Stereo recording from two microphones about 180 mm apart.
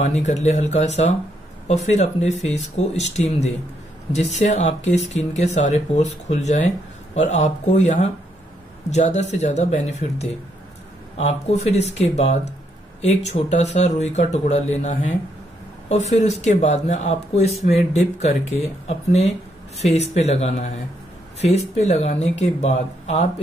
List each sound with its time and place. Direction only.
0.0 s speech: 40° left (ahead or behind)